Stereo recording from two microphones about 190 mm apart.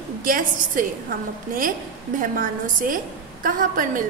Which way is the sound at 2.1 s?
45° right (ahead or behind).